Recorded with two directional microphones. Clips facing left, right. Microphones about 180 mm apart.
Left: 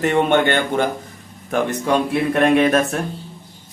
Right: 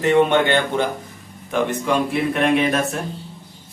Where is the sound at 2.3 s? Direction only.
50° left (ahead or behind).